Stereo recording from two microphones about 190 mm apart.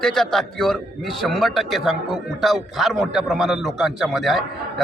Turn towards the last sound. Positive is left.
turn(degrees=0)  # may be behind; listen again after turning